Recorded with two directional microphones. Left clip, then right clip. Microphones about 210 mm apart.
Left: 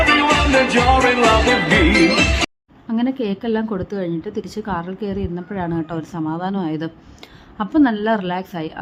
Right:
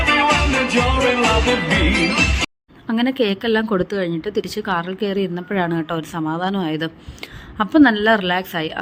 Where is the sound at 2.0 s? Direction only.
20° right (ahead or behind).